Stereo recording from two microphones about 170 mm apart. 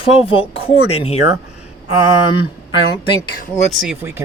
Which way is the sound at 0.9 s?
35° left (ahead or behind).